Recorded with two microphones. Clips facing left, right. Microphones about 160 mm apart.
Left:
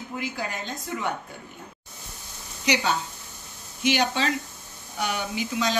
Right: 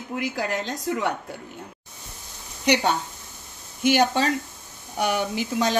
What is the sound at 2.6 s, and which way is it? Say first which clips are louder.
Speech: right 3 dB; 60° right (ahead or behind).